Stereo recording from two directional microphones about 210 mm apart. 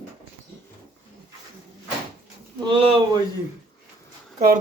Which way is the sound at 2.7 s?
25° right (ahead or behind).